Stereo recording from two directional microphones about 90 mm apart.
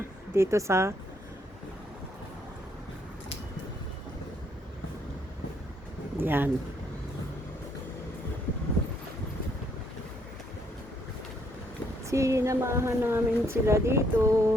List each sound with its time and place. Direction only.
0.3 s speech: 30° right (ahead or behind)
6.1 s speech: 25° right (ahead or behind)
12.1 s speech: 35° right (ahead or behind)